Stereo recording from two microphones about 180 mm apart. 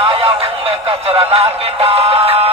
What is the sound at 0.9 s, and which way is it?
Music, 35° right (ahead or behind).